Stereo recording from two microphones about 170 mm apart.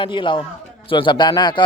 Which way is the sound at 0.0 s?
30° left (ahead or behind).